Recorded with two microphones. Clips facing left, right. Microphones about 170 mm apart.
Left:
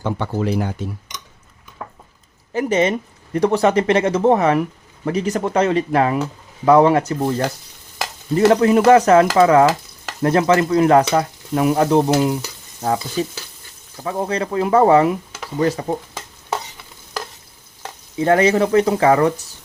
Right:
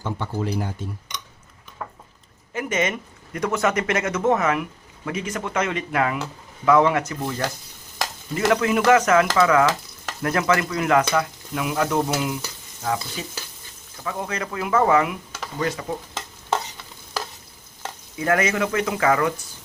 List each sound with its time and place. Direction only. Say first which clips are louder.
0.0 s speech: left 5 dB; 80° left
0.6 s cutlery: left 6 dB; 80° left
2.5 s speech: left 7 dB; 30° left (ahead or behind)
18.2 s speech: left 7 dB; 30° left (ahead or behind)